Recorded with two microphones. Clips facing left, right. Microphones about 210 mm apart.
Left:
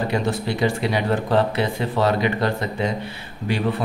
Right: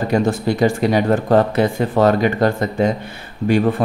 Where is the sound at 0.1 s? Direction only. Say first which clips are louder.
Right 6 dB; 45° right (ahead or behind).